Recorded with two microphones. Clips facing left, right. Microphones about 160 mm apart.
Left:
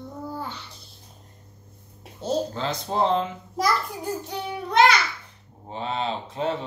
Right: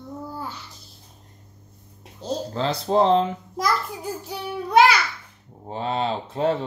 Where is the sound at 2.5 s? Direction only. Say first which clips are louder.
Right 6 dB; 35° right (ahead or behind).